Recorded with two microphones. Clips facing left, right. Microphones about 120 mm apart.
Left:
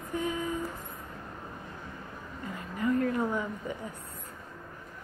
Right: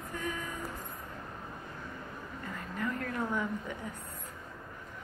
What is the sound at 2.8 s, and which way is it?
Speech, 5° left (ahead or behind).